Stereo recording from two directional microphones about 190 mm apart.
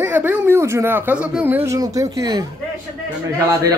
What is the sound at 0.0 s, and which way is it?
Speech, 10° right (ahead or behind).